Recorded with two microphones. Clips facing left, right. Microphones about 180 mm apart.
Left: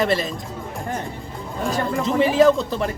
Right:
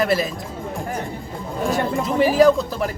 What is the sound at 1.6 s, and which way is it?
Speech, centre (ahead or behind).